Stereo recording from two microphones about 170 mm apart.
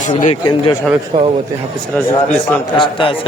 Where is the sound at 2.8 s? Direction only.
30° left (ahead or behind).